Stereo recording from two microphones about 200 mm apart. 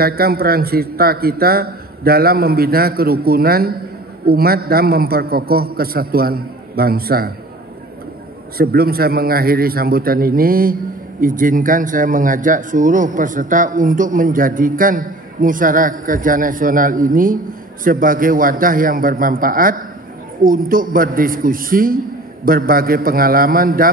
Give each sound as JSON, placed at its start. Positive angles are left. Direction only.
{"t": 0.0, "sound": "a man's voice", "side_deg": -50}
{"t": 8.5, "sound": "a man's voice", "side_deg": -50}